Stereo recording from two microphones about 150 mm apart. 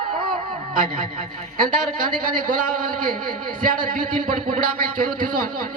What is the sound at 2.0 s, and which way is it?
A man's voice, 70° right (ahead or behind).